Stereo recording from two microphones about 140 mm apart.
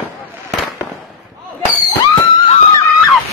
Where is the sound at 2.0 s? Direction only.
40° left (ahead or behind).